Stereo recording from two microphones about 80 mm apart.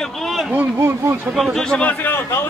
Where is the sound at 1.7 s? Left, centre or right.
Centre.